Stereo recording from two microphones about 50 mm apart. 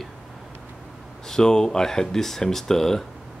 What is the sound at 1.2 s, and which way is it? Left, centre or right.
Speech, centre.